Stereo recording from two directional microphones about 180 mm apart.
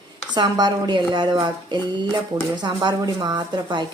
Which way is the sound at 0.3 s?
25° right (ahead or behind).